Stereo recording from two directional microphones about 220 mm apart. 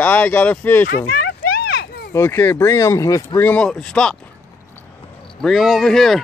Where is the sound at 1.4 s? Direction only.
45° left (ahead or behind).